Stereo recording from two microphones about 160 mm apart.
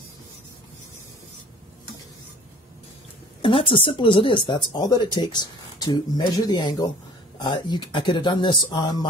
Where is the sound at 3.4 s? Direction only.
35° left (ahead or behind).